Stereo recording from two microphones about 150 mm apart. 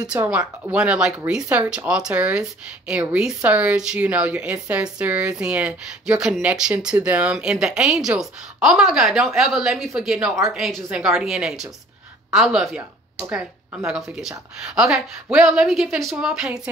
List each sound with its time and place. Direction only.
0.2 s speech: 20° right (ahead or behind)
0.7 s speech: 5° right (ahead or behind)
13.8 s speech: 5° right (ahead or behind)